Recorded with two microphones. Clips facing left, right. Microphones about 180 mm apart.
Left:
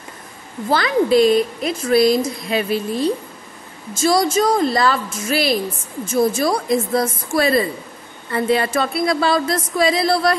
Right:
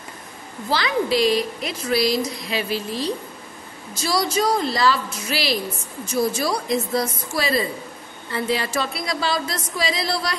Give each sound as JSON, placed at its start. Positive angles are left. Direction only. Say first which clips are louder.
{"t": 0.7, "sound": "a woman's voice", "louder": "left 5 dB", "side_deg": 50}